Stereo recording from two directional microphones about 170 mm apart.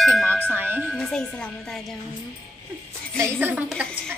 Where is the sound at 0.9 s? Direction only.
5° left (ahead or behind).